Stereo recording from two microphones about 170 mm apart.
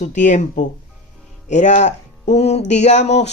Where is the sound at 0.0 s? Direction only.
45° left (ahead or behind).